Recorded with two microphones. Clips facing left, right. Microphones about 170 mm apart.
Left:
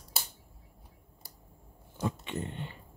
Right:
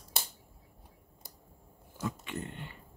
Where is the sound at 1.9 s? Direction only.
25° left (ahead or behind).